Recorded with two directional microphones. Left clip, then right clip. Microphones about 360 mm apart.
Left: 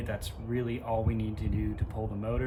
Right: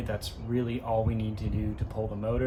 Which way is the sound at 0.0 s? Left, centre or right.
Right.